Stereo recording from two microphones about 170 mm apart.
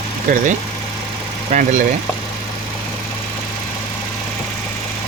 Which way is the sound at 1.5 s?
40° right (ahead or behind).